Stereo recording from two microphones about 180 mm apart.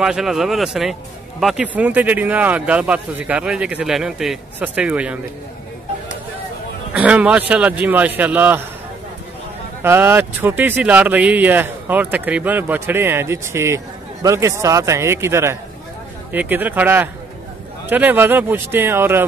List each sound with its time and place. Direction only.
0.0 s speech: centre (ahead or behind)
6.9 s speech: 5° right (ahead or behind)
9.8 s speech: 10° right (ahead or behind)